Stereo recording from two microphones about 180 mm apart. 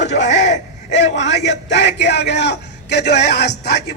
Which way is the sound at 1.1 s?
80° left.